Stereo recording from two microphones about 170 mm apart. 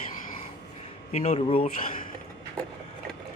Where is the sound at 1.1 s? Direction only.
40° left (ahead or behind).